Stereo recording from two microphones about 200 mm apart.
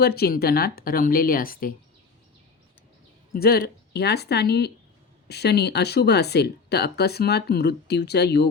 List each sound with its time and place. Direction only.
0.0 s speech: 50° left (ahead or behind)
3.3 s speech: 50° left (ahead or behind)